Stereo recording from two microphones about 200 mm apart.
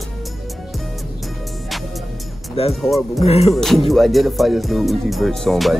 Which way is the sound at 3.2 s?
30° left (ahead or behind).